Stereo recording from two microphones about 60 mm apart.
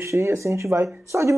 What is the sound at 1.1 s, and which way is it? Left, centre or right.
Speech, right.